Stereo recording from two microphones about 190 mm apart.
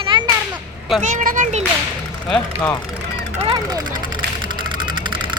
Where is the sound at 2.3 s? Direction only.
10° left (ahead or behind).